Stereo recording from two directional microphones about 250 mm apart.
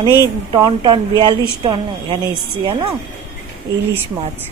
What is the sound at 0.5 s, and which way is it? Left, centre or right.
A woman's voice, centre.